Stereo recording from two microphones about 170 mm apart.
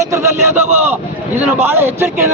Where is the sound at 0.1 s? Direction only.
15° right (ahead or behind).